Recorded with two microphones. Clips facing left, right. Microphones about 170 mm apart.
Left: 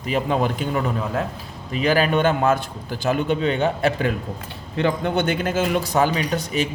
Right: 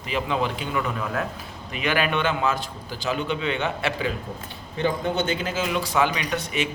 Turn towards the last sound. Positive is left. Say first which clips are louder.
# left 4 dB
turn(degrees=40)  # may be behind; listen again after turning